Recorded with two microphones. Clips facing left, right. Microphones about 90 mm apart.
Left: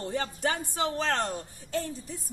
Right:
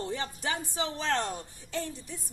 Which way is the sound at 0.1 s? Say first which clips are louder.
Left 3 dB; 55° left (ahead or behind).